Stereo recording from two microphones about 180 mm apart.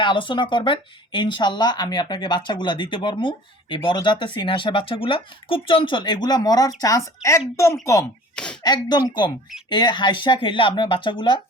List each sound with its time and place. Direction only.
0.0 s speech: 25° left (ahead or behind)